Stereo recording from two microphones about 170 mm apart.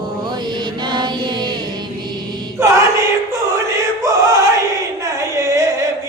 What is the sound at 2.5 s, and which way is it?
Choir, 15° right (ahead or behind).